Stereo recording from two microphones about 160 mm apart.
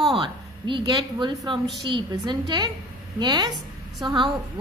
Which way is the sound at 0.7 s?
30° right (ahead or behind).